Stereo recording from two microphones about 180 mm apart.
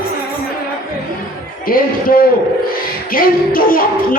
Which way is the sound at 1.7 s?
50° left (ahead or behind).